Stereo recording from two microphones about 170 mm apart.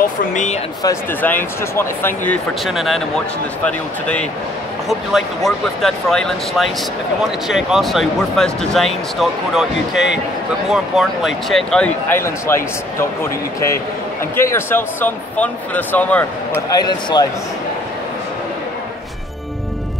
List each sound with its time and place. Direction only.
0.3 s speech: 45° left (ahead or behind)
0.8 s speech: 15° left (ahead or behind)
16.7 s speech: 25° left (ahead or behind)